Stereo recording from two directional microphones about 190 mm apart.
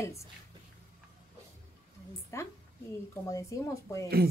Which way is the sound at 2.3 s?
15° left (ahead or behind).